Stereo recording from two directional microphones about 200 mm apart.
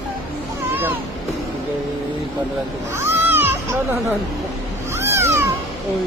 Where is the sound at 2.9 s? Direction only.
10° right (ahead or behind).